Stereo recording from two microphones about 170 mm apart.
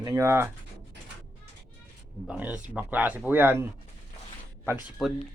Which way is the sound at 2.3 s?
10° right (ahead or behind).